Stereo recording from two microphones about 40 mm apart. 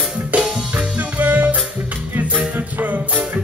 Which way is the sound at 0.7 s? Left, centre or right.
Right.